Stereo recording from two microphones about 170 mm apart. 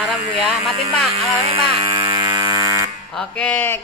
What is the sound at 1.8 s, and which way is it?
Ratchet, 25° right (ahead or behind).